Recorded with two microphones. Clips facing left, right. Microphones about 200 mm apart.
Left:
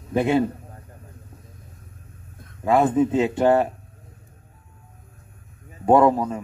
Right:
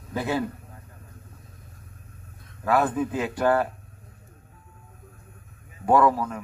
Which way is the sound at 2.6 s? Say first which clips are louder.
Left 5 dB; 20° left (ahead or behind).